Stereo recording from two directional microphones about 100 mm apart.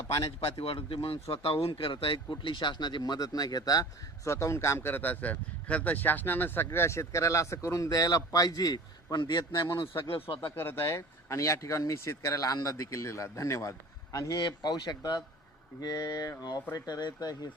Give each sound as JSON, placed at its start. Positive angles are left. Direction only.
{"t": 0.4, "sound": "speech", "side_deg": 70}
{"t": 9.7, "sound": "speech", "side_deg": 60}
{"t": 10.5, "sound": "speech", "side_deg": 20}
{"t": 14.3, "sound": "speech", "side_deg": 50}